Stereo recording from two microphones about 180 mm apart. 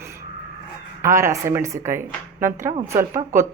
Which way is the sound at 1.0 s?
15° right (ahead or behind).